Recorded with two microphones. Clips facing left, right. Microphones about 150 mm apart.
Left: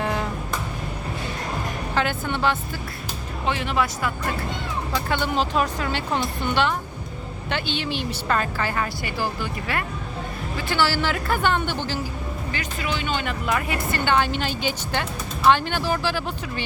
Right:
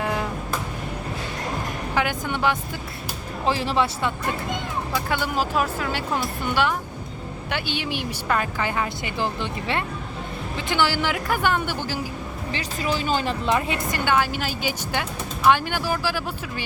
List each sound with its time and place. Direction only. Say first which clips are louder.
0.0 s music: even; 10° right (ahead or behind)
2.0 s a woman's voice: even; 10° right (ahead or behind)
3.4 s speech: right 2 dB; 30° right (ahead or behind)
4.9 s a woman's voice: left 1 dB; 5° right (ahead or behind)
12.5 s speech: right 3 dB; 30° right (ahead or behind)
14.0 s a woman's voice: left 1 dB; 10° right (ahead or behind)